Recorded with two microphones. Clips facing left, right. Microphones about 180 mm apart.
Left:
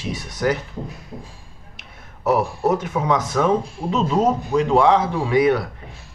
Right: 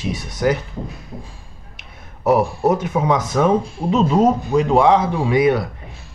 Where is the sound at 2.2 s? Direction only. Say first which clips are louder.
Right 3 dB; 15° right (ahead or behind).